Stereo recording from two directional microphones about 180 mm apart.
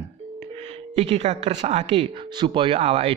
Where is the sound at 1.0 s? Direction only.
35° right (ahead or behind).